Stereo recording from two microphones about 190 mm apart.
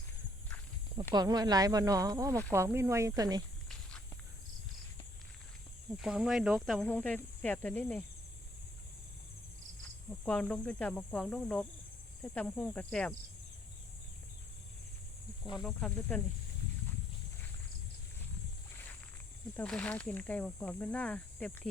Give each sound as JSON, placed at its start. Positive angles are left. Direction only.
{"t": 1.1, "sound": "speech", "side_deg": -20}
{"t": 3.7, "sound": "walk", "side_deg": 5}
{"t": 6.0, "sound": "speech", "side_deg": -5}
{"t": 10.2, "sound": "speech", "side_deg": 5}
{"t": 15.6, "sound": "speech", "side_deg": 5}
{"t": 19.5, "sound": "speech", "side_deg": 5}